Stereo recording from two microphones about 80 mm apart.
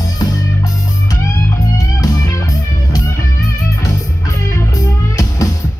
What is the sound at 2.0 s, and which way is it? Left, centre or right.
Music, left.